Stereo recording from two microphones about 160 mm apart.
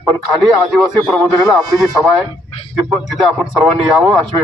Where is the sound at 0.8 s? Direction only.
Centre (ahead or behind).